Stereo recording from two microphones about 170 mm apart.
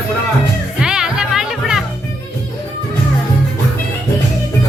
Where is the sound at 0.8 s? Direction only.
5° right (ahead or behind).